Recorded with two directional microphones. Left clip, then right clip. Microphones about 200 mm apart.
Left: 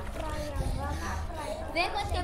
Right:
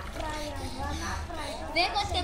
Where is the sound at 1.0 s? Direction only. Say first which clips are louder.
Right 1 dB; 25° left (ahead or behind).